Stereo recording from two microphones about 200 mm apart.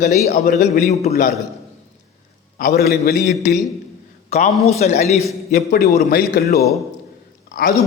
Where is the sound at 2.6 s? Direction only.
50° left (ahead or behind).